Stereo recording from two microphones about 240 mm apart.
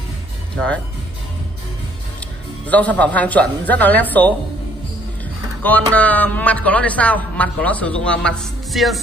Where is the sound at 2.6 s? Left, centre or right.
Centre.